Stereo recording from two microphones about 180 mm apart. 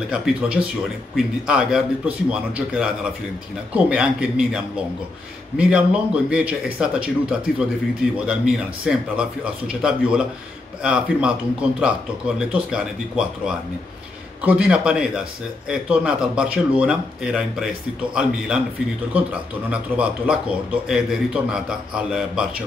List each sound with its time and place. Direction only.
0.1 s speech: 5° right (ahead or behind)
5.6 s speech: 5° right (ahead or behind)
12.4 s speech: 5° right (ahead or behind)
19.7 s speech: 5° right (ahead or behind)